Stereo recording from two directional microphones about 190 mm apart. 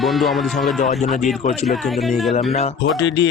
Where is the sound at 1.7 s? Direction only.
Centre (ahead or behind).